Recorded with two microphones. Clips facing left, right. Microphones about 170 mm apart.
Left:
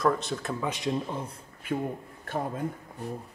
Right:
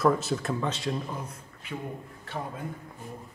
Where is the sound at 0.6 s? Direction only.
15° left (ahead or behind).